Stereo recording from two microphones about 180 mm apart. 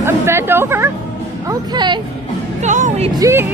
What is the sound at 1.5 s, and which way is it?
Speech, 25° right (ahead or behind).